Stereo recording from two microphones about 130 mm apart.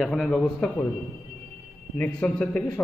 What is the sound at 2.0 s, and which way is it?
Speech, 10° left (ahead or behind).